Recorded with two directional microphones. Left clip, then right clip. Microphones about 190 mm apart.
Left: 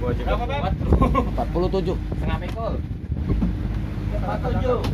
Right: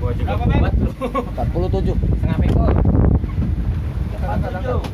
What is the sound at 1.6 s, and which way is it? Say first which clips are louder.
Speech: even; 15° left (ahead or behind).